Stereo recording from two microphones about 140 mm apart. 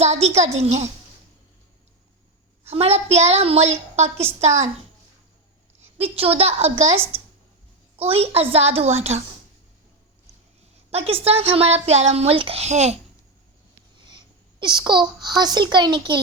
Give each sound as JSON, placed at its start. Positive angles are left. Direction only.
{"t": 0.0, "sound": "a woman's voice", "side_deg": -50}
{"t": 2.6, "sound": "a woman's voice", "side_deg": -45}
{"t": 5.8, "sound": "a woman's voice", "side_deg": -45}
{"t": 10.9, "sound": "a woman's voice", "side_deg": -45}
{"t": 14.6, "sound": "a child's voice", "side_deg": -30}